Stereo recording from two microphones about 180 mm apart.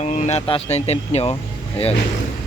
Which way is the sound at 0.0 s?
40° left (ahead or behind).